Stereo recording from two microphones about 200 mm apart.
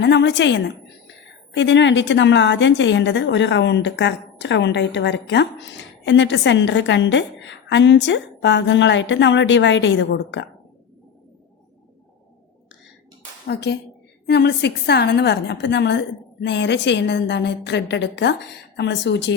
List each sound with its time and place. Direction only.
0.0 s a woman's voice: 60° left (ahead or behind)
13.5 s a woman's voice: 55° left (ahead or behind)